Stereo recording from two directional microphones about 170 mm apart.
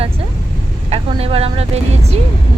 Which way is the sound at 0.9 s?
35° right (ahead or behind).